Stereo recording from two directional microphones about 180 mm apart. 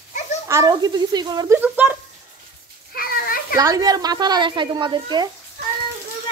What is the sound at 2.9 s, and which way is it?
Children playing, 55° left (ahead or behind).